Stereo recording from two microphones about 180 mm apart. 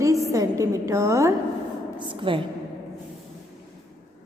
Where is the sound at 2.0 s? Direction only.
25° right (ahead or behind).